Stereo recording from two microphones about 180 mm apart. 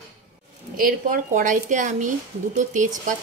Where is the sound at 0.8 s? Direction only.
50° right (ahead or behind).